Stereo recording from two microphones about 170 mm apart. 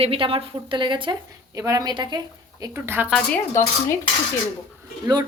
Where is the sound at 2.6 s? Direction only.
15° right (ahead or behind).